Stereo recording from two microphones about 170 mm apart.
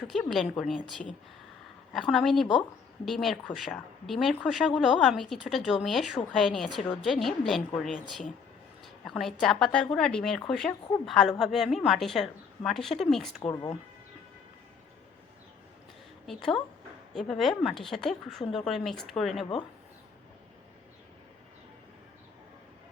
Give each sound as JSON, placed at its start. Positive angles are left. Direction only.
{"t": 0.0, "sound": "a woman's voice", "side_deg": 5}
{"t": 13.4, "sound": "speech", "side_deg": 25}
{"t": 16.2, "sound": "a woman's voice", "side_deg": 0}